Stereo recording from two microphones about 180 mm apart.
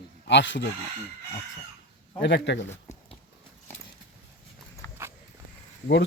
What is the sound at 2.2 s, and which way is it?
Speech, 75° left (ahead or behind).